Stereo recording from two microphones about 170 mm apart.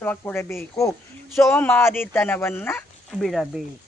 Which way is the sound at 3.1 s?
Centre (ahead or behind).